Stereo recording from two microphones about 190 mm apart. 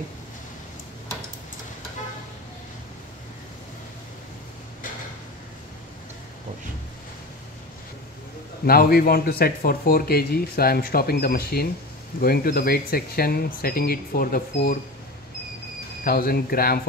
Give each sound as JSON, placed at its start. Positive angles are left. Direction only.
{"t": 8.6, "sound": "speech", "side_deg": 50}
{"t": 16.0, "sound": "speech", "side_deg": 50}